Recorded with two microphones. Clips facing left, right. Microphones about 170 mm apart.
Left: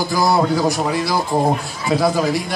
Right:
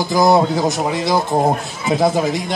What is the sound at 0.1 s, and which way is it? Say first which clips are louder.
Speech: right 4 dB; 20° right (ahead or behind).